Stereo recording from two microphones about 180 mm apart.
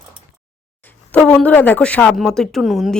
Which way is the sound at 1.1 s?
5° left (ahead or behind).